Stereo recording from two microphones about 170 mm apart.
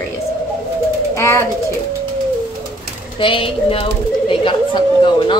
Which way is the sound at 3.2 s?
30° left (ahead or behind).